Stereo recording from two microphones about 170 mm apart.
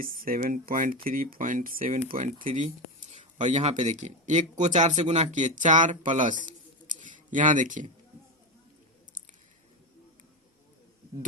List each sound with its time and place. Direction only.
0.0 s speech: 55° right (ahead or behind)
2.1 s speech: 35° right (ahead or behind)
3.1 s speech: 45° right (ahead or behind)